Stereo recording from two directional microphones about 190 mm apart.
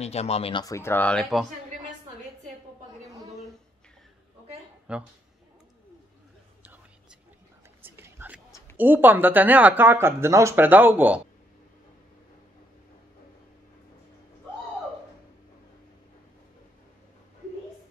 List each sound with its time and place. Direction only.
0.0 s speech: 35° left (ahead or behind); by 1.5 s centre (ahead or behind)
4.9 s speech: 5° right (ahead or behind)
6.6 s whispering: 10° right (ahead or behind)
8.7 s speech: 10° right (ahead or behind)